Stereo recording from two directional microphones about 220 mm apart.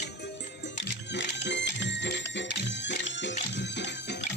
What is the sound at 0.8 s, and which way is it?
Music, 50° left (ahead or behind).